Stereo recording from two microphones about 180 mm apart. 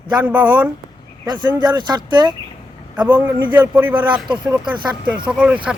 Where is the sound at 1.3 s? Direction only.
25° right (ahead or behind).